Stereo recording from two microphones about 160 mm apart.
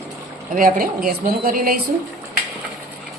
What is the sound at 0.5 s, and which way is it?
A woman's voice, 60° right (ahead or behind).